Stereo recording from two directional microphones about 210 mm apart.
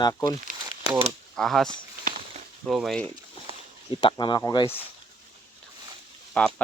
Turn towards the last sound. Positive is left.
turn(degrees=5)  # may be behind; listen again after turning